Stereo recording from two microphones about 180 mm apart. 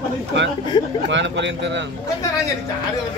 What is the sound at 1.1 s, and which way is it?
Speech, 80° right.